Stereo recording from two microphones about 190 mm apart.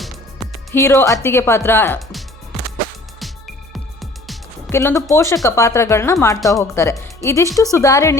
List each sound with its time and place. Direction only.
0.7 s speech: 15° left (ahead or behind)
3.2 s music: centre (ahead or behind)
4.7 s speech: 15° left (ahead or behind)